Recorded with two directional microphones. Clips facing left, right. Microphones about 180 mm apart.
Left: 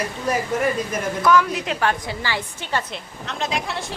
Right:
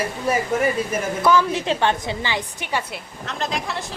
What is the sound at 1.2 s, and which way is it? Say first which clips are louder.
A woman's voice: even; 30° right (ahead or behind).